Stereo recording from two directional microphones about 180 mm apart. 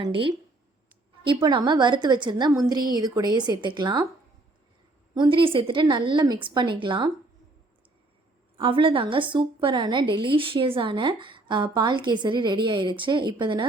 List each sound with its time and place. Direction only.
0.0 s a woman's voice: 30° right (ahead or behind)
5.1 s a woman's voice: 25° right (ahead or behind)
8.5 s a woman's voice: 30° right (ahead or behind)